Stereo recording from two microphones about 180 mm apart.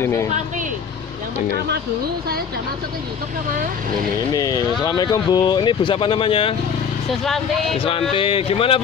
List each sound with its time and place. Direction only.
0.0 s speech: 15° left (ahead or behind)
4.3 s speech: 20° left (ahead or behind)
8.1 s speech: 30° left (ahead or behind)